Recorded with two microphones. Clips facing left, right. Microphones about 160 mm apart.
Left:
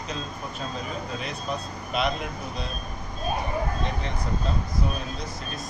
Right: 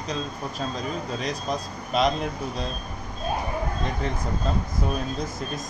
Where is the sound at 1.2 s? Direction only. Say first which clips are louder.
Right 3 dB; 40° right (ahead or behind).